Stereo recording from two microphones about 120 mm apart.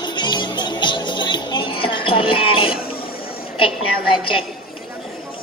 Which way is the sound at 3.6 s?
45° left (ahead or behind).